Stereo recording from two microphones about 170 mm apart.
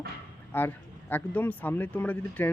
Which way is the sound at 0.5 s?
10° left (ahead or behind).